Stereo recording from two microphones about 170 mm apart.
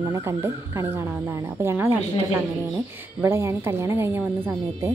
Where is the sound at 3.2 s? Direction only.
15° right (ahead or behind).